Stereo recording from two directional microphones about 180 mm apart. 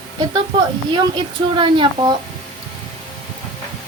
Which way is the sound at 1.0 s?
25° right (ahead or behind).